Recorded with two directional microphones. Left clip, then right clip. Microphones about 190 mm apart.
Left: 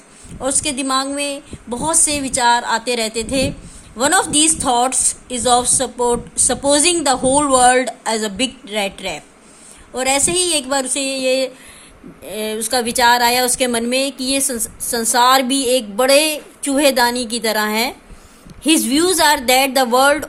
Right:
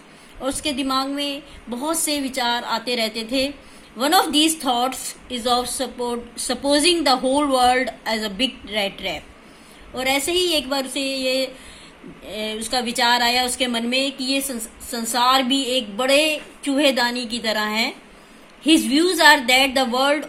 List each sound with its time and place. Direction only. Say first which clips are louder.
0.4 s speech: left 4 dB; 50° left (ahead or behind)